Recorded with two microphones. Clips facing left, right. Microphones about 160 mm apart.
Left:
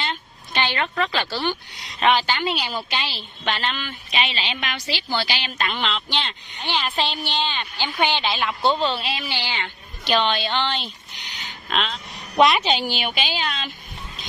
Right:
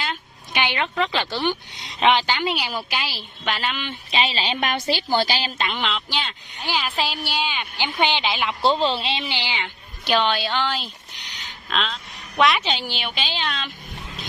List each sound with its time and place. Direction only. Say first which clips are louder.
0.0 s a woman's voice: left 1 dB; 5° right (ahead or behind)
3.8 s speech: right 2 dB; 30° right (ahead or behind)
5.6 s a woman's voice: even; 15° right (ahead or behind)
5.9 s a woman's voice: even; 5° right (ahead or behind)
8.6 s a woman's voice: right 1 dB; 30° right (ahead or behind); by 10.9 s 5° right (ahead or behind)
11.3 s a sound: left 1 dB; centre (ahead or behind)
12.4 s a woman's voice: left 3 dB; 25° left (ahead or behind)
12.6 s a woman's voice: left 4 dB; 15° left (ahead or behind)